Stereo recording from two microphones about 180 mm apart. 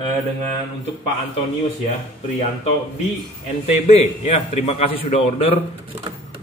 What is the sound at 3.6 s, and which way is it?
Speech, 35° left (ahead or behind).